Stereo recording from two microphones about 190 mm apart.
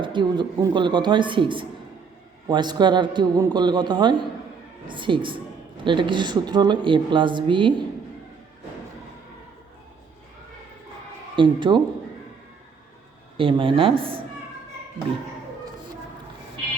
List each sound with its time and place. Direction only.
0.0 s speech: 25° right (ahead or behind)
11.3 s speech: 25° right (ahead or behind)
13.3 s speech: 25° right (ahead or behind)